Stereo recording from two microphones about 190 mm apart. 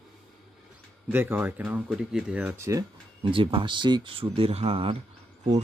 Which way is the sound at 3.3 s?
25° right (ahead or behind).